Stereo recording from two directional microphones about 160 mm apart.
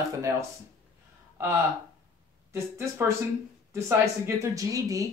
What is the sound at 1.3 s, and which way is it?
Speech, 15° right (ahead or behind).